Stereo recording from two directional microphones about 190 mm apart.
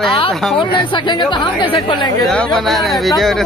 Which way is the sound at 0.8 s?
25° left (ahead or behind).